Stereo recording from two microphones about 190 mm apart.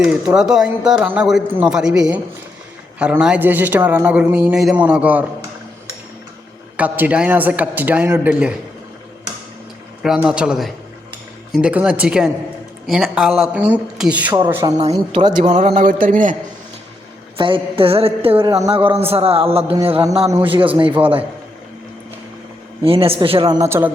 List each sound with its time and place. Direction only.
0.3 s a man's voice: 5° right (ahead or behind)
6.7 s a man's voice: 10° right (ahead or behind)
10.0 s speech: 5° right (ahead or behind)
14.3 s speech: 15° right (ahead or behind)
15.5 s a man's voice: 45° right (ahead or behind)
17.3 s speech: 25° right (ahead or behind)
22.9 s speech: 30° right (ahead or behind); by 23.9 s 15° right (ahead or behind)